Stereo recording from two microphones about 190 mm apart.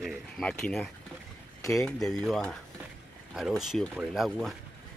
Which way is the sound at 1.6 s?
15° left (ahead or behind).